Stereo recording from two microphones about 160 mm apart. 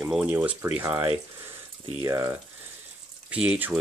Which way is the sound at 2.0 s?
20° right (ahead or behind).